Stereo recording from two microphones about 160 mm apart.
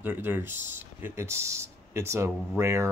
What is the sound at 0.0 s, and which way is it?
Speech, 10° right (ahead or behind).